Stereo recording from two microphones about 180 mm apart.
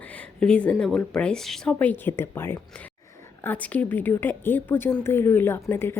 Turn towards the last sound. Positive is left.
turn(degrees=10)  # may be behind; listen again after turning